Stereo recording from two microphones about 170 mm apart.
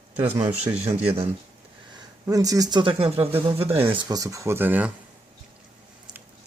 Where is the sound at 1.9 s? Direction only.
20° right (ahead or behind).